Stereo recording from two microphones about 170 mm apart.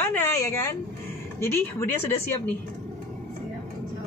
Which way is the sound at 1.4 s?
15° left (ahead or behind).